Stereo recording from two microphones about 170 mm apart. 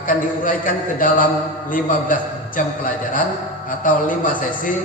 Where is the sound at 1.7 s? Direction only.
50° left (ahead or behind).